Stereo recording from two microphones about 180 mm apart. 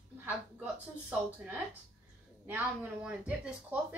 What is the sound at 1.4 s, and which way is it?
Speech, 5° right (ahead or behind).